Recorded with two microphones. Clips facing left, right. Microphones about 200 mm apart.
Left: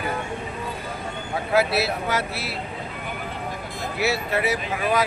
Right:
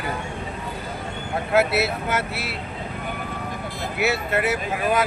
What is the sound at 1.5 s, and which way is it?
Speech, centre (ahead or behind).